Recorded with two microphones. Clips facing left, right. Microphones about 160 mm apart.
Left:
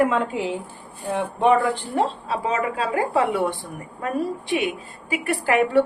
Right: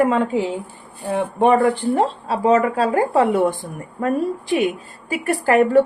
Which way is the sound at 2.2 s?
40° right (ahead or behind).